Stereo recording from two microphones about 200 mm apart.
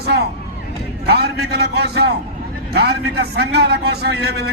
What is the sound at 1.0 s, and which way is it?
A man's voice, 55° right (ahead or behind).